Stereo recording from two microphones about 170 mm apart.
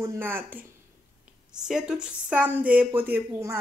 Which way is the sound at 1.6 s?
5° right (ahead or behind).